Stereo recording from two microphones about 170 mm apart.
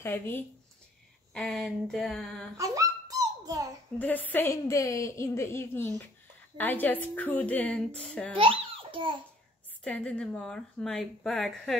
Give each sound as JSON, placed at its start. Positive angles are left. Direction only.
{"t": 0.0, "sound": "a woman's voice", "side_deg": 15}
{"t": 2.5, "sound": "dog", "side_deg": -20}
{"t": 4.0, "sound": "a woman's voice", "side_deg": 10}
{"t": 8.4, "sound": "babbling", "side_deg": -30}
{"t": 9.8, "sound": "a woman's voice", "side_deg": 5}